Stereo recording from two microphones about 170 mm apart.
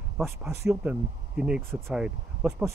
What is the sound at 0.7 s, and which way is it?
Speech, 5° right (ahead or behind).